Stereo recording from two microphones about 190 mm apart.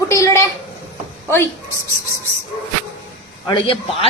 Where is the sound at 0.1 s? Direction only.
15° left (ahead or behind).